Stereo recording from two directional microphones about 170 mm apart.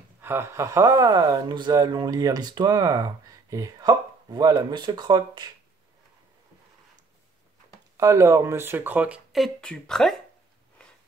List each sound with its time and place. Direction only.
0.2 s speech: 15° right (ahead or behind)
8.0 s speech: 20° right (ahead or behind); by 10.1 s 5° left (ahead or behind)